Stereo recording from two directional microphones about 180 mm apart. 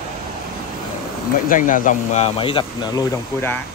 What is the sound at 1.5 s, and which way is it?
Speech, 45° left (ahead or behind).